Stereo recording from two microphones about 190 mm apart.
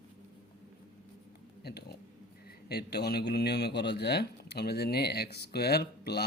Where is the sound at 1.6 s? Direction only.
60° left (ahead or behind).